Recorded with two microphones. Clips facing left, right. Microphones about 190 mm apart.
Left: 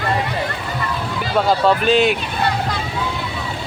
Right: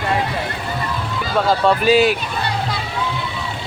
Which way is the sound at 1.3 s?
Centre (ahead or behind).